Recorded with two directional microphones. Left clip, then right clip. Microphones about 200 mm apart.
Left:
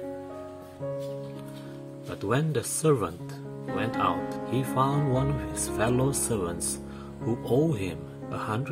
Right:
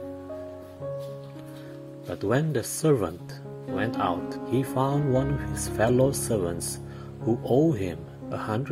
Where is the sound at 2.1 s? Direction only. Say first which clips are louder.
Right 2 dB; 15° right (ahead or behind).